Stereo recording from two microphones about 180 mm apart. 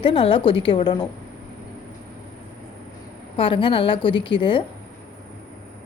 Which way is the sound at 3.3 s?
30° left (ahead or behind).